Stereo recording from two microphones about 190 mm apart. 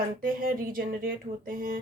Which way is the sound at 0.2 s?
50° right (ahead or behind).